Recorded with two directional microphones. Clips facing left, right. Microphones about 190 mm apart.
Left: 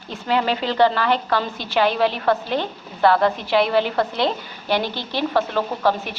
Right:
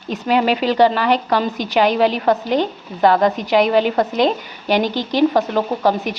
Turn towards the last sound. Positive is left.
turn(degrees=-15)  # may be behind; listen again after turning